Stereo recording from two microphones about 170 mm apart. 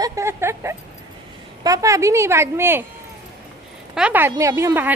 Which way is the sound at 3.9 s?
10° right (ahead or behind).